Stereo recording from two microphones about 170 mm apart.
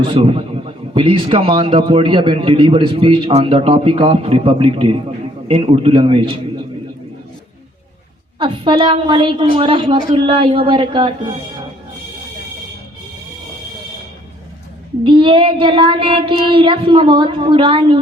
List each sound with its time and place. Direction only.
0.0 s a man's voice: 30° right (ahead or behind)
8.4 s a man's voice: 30° right (ahead or behind)
15.0 s a man's voice: 30° right (ahead or behind)